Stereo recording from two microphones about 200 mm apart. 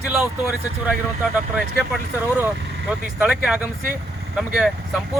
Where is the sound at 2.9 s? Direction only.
5° right (ahead or behind).